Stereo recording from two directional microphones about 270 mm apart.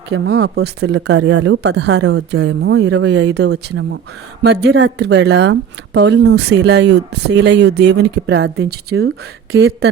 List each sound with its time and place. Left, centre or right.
0.1 s speech: right